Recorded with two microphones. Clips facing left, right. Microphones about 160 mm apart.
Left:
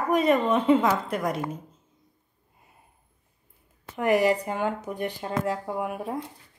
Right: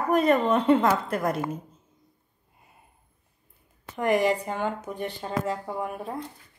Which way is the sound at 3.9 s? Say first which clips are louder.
Left 1 dB; 5° left (ahead or behind).